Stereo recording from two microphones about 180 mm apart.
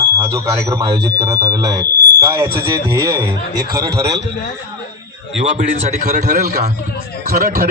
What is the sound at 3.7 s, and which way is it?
Speech, 55° right (ahead or behind).